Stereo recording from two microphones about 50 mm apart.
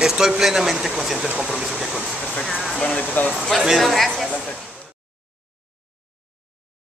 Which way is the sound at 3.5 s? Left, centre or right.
Centre.